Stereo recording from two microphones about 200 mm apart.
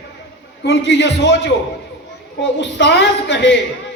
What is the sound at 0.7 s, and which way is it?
Speech, 60° left (ahead or behind).